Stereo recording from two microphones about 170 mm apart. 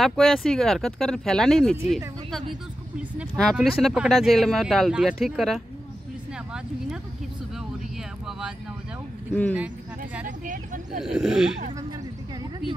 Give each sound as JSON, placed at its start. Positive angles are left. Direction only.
{"t": 0.0, "sound": "speech", "side_deg": 0}
{"t": 3.3, "sound": "speech", "side_deg": 0}
{"t": 8.3, "sound": "speech", "side_deg": -5}
{"t": 9.3, "sound": "speech", "side_deg": 10}
{"t": 10.2, "sound": "speech", "side_deg": -50}
{"t": 11.0, "sound": "speech", "side_deg": -5}